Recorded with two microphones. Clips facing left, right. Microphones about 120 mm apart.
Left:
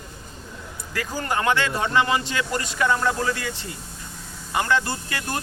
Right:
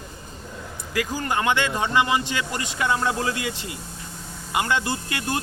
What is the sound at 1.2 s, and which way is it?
Speech, 20° right (ahead or behind).